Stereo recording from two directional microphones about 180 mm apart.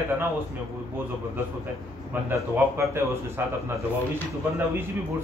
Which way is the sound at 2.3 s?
15° right (ahead or behind).